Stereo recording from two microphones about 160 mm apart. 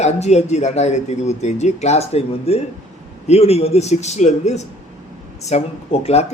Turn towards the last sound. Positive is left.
turn(degrees=40)  # may be behind; listen again after turning